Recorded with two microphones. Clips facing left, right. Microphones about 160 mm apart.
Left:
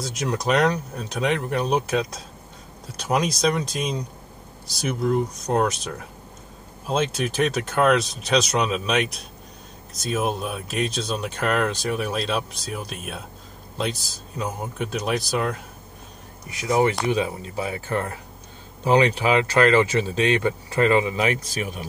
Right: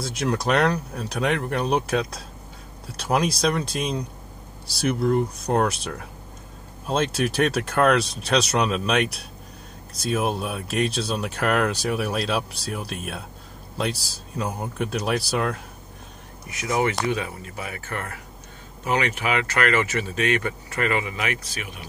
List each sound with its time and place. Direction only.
0.0 s speech: centre (ahead or behind)
3.1 s speech: centre (ahead or behind)
16.4 s speech: 30° left (ahead or behind)